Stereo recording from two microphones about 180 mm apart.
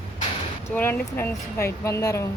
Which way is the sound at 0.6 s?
10° left (ahead or behind).